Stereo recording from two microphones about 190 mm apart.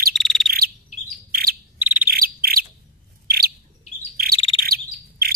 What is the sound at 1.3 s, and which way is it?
Bird, 50° right (ahead or behind).